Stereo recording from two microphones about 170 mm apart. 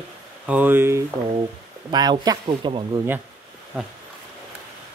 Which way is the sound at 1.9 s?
25° right (ahead or behind).